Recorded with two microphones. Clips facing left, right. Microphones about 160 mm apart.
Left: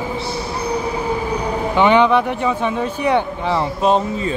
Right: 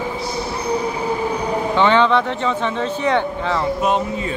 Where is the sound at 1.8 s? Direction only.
15° left (ahead or behind).